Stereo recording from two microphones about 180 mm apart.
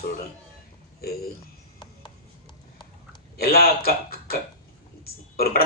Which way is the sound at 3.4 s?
55° left (ahead or behind).